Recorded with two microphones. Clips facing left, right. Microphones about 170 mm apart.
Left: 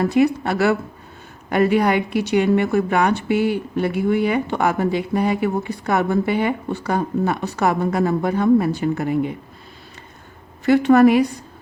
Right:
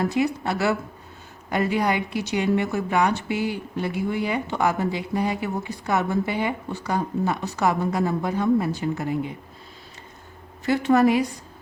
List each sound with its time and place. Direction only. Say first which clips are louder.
0.1 s speech: left 6 dB; 60° left (ahead or behind)
10.7 s speech: left 6 dB; 65° left (ahead or behind)